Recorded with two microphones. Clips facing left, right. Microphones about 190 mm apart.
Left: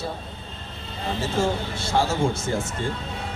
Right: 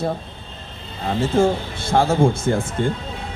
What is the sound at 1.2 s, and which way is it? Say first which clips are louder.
Speech: right 7 dB; 55° right (ahead or behind).